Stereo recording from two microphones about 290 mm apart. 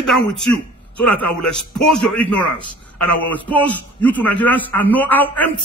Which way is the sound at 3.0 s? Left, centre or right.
Left.